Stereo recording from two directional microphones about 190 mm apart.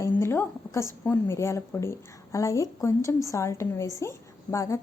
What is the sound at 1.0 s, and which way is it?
A woman's voice, 10° left (ahead or behind).